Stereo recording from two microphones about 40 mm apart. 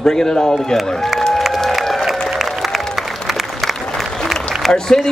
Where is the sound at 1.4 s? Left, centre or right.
Centre.